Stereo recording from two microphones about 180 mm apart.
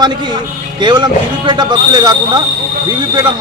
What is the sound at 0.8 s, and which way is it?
A man's voice, 25° right (ahead or behind).